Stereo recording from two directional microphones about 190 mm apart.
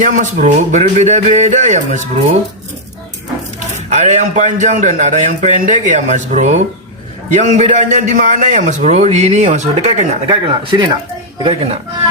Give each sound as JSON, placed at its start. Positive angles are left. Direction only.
{"t": 0.0, "sound": "a man's voice", "side_deg": -40}
{"t": 3.8, "sound": "a man's voice", "side_deg": -40}